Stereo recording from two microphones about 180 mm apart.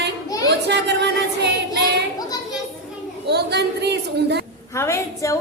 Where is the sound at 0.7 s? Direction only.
70° right (ahead or behind).